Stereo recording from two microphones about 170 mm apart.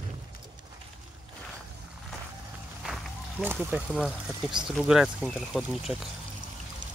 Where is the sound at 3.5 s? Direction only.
10° right (ahead or behind).